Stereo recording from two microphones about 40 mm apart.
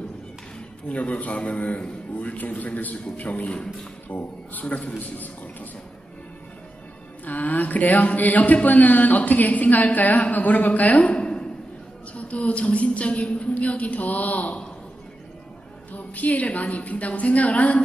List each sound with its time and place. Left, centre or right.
0.8 s a woman's voice: left
7.2 s a woman's voice: left
11.1 s a sound: left
12.1 s a woman's voice: left
15.9 s a woman's voice: left